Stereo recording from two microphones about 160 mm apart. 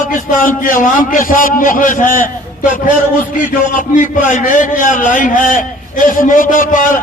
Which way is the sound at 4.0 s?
55° left (ahead or behind).